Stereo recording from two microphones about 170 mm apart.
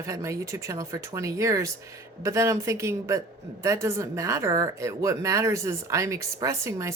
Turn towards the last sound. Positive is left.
turn(degrees=-15)  # may be behind; listen again after turning